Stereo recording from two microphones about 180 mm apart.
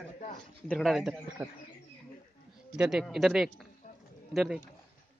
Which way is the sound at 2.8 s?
5° right (ahead or behind).